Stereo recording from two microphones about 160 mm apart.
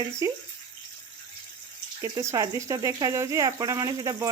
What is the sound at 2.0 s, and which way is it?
Speech, 20° right (ahead or behind).